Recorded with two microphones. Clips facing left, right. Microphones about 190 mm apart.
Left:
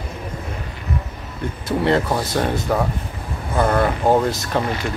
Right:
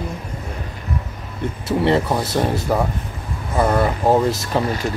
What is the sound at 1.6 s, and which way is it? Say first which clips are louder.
Speech: right 1 dB; 5° right (ahead or behind).